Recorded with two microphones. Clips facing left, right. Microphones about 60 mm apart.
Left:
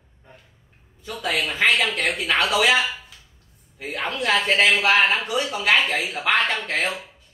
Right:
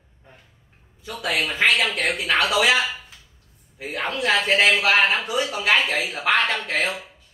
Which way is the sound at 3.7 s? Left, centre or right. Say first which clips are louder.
Right 1 dB; centre.